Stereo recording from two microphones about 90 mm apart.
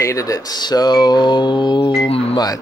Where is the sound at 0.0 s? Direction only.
40° left (ahead or behind); by 1.9 s 55° left (ahead or behind).